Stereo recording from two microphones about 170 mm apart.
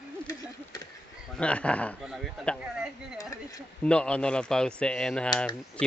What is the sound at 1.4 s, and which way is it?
Speech, 5° left (ahead or behind).